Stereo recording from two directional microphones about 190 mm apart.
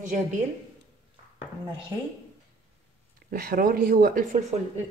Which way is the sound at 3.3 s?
50° right (ahead or behind).